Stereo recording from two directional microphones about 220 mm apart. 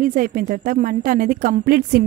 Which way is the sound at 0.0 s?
40° right (ahead or behind).